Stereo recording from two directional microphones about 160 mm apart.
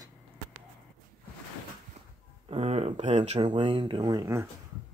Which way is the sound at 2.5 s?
40° right (ahead or behind).